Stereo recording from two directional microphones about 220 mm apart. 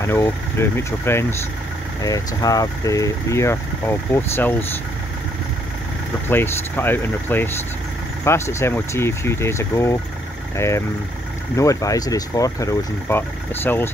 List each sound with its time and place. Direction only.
0.0 s speech: 10° left (ahead or behind)
6.2 s speech: 10° left (ahead or behind)